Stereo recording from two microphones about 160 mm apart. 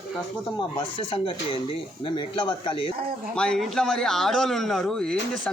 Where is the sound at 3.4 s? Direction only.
5° left (ahead or behind).